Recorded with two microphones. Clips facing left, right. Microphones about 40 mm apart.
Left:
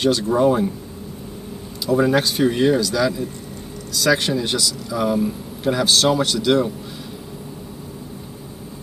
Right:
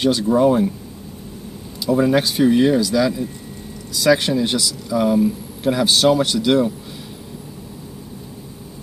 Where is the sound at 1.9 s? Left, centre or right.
Centre.